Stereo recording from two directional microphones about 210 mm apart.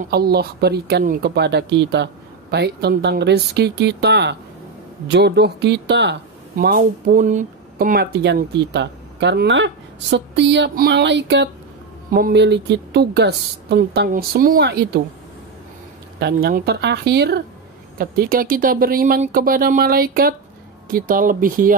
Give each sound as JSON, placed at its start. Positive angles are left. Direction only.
{"t": 0.0, "sound": "speech", "side_deg": -50}
{"t": 10.1, "sound": "a sound", "side_deg": -55}
{"t": 12.1, "sound": "speech", "side_deg": -45}
{"t": 16.2, "sound": "speech", "side_deg": -50}